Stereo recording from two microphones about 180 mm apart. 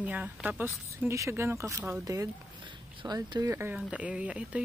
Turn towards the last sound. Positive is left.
turn(degrees=-5)  # may be behind; listen again after turning